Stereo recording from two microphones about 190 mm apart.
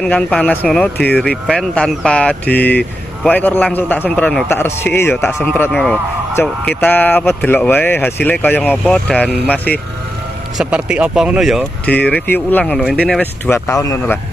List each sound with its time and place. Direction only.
0.0 s speech: 5° left (ahead or behind)
10.6 s speech: 5° right (ahead or behind); by 14.2 s 10° left (ahead or behind)